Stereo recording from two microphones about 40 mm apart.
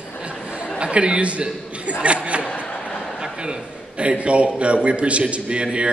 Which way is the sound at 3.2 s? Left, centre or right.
Right.